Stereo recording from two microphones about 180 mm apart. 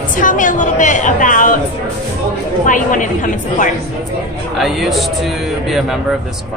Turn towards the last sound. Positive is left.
turn(degrees=0)  # may be behind; listen again after turning